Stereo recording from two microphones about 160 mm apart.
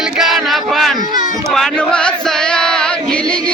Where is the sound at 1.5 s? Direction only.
Centre (ahead or behind).